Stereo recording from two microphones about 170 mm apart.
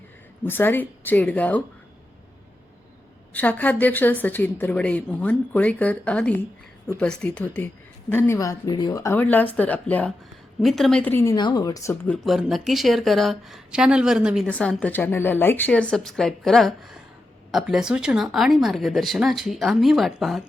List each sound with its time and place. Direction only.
0.4 s a woman's voice: 10° left (ahead or behind)
3.3 s a woman's voice: 10° left (ahead or behind)
11.3 s speech: 25° left (ahead or behind)
12.1 s a woman's voice: centre (ahead or behind)